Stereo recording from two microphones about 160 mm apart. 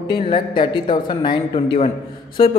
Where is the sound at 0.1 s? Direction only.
30° left (ahead or behind).